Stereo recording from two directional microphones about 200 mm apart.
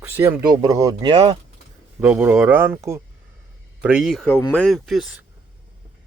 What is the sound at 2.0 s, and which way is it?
Speech, 10° right (ahead or behind).